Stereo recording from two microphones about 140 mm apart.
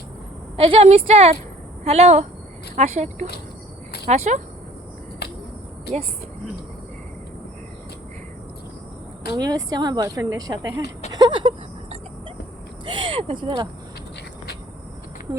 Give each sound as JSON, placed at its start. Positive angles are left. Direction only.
{"t": 0.5, "sound": "a woman's voice", "side_deg": -45}
{"t": 9.3, "sound": "a woman's voice", "side_deg": -25}
{"t": 11.1, "sound": "a sound", "side_deg": -30}
{"t": 12.8, "sound": "speech", "side_deg": -35}